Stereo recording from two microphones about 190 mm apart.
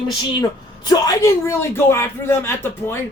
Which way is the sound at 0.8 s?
20° left (ahead or behind).